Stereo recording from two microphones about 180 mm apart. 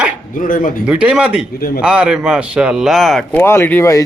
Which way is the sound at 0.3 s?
50° left (ahead or behind).